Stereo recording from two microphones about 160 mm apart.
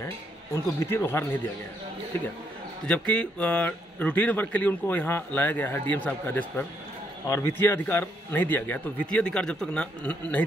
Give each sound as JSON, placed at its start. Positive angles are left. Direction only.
{"t": 0.0, "sound": "speech", "side_deg": 15}
{"t": 2.9, "sound": "a man's voice", "side_deg": 5}